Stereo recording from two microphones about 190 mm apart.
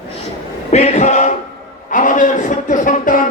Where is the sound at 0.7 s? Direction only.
35° left (ahead or behind).